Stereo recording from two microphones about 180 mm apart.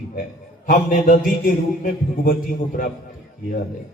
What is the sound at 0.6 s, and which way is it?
A man's voice, 45° left (ahead or behind).